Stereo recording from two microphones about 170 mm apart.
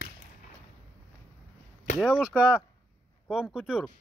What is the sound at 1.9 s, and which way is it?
Speech, 5° left (ahead or behind).